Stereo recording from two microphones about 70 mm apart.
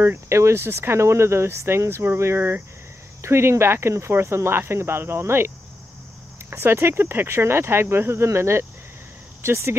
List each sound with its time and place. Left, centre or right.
0.0 s speech: right
6.5 s speech: right